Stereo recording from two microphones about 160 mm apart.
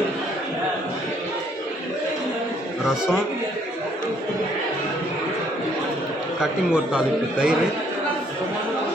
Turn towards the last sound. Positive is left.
turn(degrees=-5)  # may be behind; listen again after turning